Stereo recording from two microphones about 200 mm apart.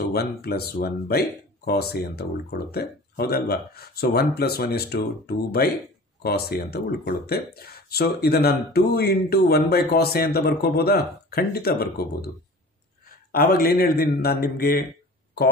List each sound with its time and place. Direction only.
0.1 s speech: 50° left (ahead or behind)
13.3 s speech: 45° left (ahead or behind)